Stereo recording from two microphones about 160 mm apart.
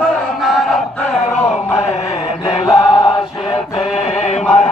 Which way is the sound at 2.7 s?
25° left (ahead or behind).